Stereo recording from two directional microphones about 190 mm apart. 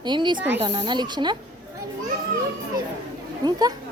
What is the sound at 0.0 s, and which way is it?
A woman's voice, 25° right (ahead or behind).